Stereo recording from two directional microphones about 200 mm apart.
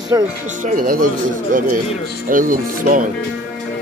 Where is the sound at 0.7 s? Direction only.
45° right (ahead or behind).